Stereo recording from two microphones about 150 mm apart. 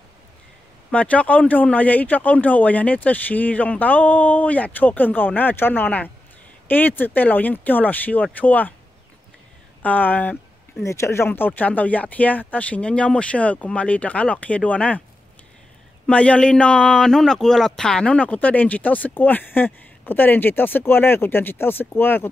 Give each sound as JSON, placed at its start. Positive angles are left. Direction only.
{"t": 0.9, "sound": "speech", "side_deg": 10}
{"t": 9.8, "sound": "speech", "side_deg": 10}
{"t": 16.1, "sound": "speech", "side_deg": 10}